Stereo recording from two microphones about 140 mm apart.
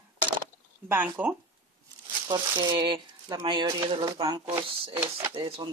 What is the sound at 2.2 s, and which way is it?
Speech, 30° right (ahead or behind).